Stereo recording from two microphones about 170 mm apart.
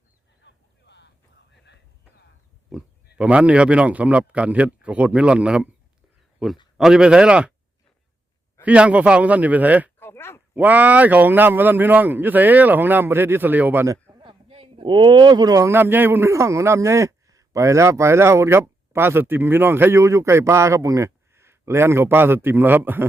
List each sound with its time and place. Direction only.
0.4 s a sound: 90° left
2.7 s a man's voice: centre (ahead or behind)
8.6 s a man's voice: 5° right (ahead or behind)
10.0 s a sound: 15° left (ahead or behind)
10.5 s a man's voice: 10° right (ahead or behind)
14.2 s speech: 35° right (ahead or behind); by 23.0 s 10° right (ahead or behind)